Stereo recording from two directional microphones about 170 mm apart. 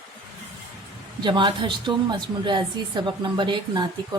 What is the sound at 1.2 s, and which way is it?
A woman's voice, 25° right (ahead or behind).